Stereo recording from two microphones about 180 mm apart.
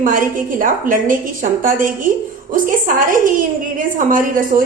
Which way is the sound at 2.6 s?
50° right (ahead or behind).